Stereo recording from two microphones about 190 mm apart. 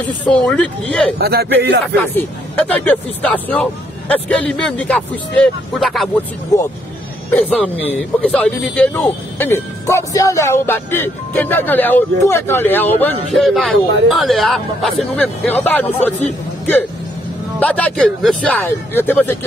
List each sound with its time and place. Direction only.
0.2 s speech: 5° left (ahead or behind)
1.1 s speech: 55° right (ahead or behind)
2.1 s speech: 10° left (ahead or behind)
7.2 s speech: 5° left (ahead or behind)
17.6 s speech: 10° left (ahead or behind)